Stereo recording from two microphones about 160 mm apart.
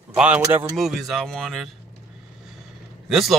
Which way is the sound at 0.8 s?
Centre (ahead or behind).